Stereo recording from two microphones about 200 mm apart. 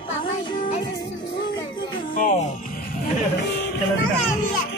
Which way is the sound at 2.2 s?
45° left (ahead or behind).